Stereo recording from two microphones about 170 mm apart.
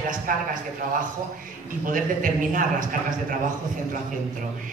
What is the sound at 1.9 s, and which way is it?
Speech, 50° right (ahead or behind).